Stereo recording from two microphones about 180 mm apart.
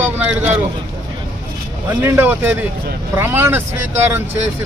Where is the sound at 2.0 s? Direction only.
10° right (ahead or behind).